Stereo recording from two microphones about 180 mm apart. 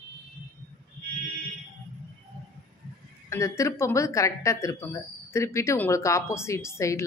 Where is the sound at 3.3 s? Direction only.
15° left (ahead or behind).